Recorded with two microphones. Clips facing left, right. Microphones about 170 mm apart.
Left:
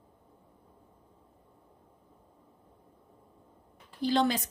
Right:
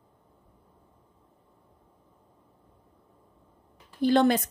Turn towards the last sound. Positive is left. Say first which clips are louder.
# right 6 dB
turn(degrees=-55)  # may be behind; listen again after turning